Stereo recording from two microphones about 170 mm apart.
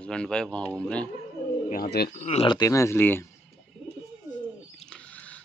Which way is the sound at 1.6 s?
45° left (ahead or behind).